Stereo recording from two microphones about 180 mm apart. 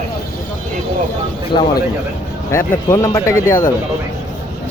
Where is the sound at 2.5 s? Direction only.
15° left (ahead or behind).